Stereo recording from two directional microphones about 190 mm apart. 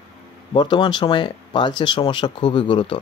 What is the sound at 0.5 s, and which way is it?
Speech, 25° left (ahead or behind).